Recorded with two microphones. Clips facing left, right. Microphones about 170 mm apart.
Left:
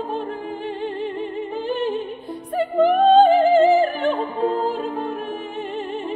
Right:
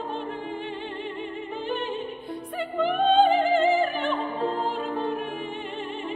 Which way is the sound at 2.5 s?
40° left (ahead or behind).